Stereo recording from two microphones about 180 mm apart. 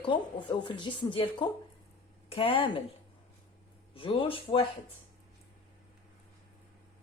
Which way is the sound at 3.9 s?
30° left (ahead or behind).